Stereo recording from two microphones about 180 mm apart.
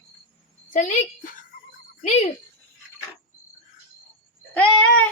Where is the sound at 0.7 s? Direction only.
45° left (ahead or behind).